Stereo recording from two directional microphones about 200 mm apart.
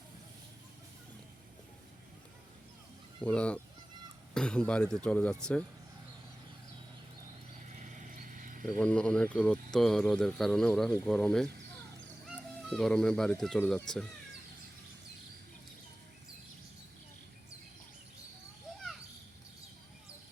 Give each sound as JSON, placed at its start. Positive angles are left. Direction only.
{"t": 3.2, "sound": "speech", "side_deg": 5}
{"t": 7.7, "sound": "a sound", "side_deg": -40}
{"t": 8.8, "sound": "speech", "side_deg": 5}
{"t": 12.6, "sound": "speech", "side_deg": 5}